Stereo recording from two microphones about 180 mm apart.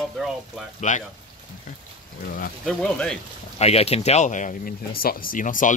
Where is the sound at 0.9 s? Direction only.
45° left (ahead or behind).